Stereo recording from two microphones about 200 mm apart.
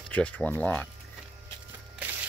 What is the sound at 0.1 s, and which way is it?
Speech, 5° left (ahead or behind).